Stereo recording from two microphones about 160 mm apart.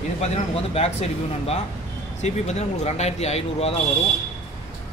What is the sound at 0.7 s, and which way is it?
A man's voice, 40° left (ahead or behind).